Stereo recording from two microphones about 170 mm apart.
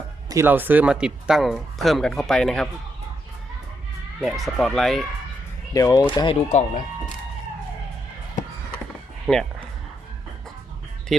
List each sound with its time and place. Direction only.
0.3 s speech: 15° right (ahead or behind); by 2.6 s 5° left (ahead or behind)
4.2 s speech: centre (ahead or behind)
5.7 s speech: 20° left (ahead or behind)
6.5 s speech: 45° left (ahead or behind)
9.2 s speech: centre (ahead or behind)
11.1 s speech: centre (ahead or behind)